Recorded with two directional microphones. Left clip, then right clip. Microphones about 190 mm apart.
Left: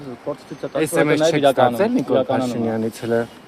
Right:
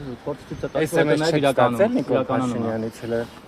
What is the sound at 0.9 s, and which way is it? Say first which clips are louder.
Speech: left 3 dB; 45° left (ahead or behind).